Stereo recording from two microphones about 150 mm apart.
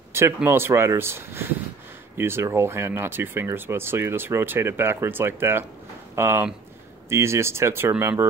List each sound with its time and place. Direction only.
0.1 s speech: 15° right (ahead or behind)